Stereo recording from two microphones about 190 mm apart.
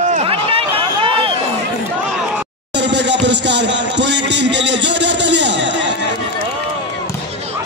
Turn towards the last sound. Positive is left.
turn(degrees=-70)  # may be behind; listen again after turning